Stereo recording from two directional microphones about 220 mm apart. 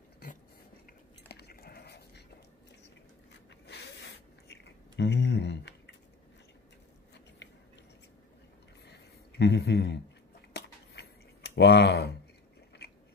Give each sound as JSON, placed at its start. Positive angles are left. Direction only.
{"t": 1.3, "sound": "dog", "side_deg": 45}
{"t": 3.6, "sound": "zipper", "side_deg": 50}
{"t": 7.4, "sound": "a sound", "side_deg": 55}
{"t": 8.9, "sound": "a sound", "side_deg": 50}
{"t": 11.5, "sound": "speech", "side_deg": 50}
{"t": 12.8, "sound": "biting", "side_deg": 45}